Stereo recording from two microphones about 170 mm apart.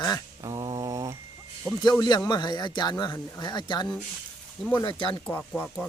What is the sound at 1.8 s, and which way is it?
Speech, 25° left (ahead or behind).